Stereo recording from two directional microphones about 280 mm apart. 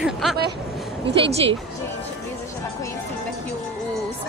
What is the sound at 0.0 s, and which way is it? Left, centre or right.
Vehicle, centre.